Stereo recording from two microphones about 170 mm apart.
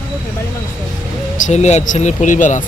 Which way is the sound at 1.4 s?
40° left (ahead or behind).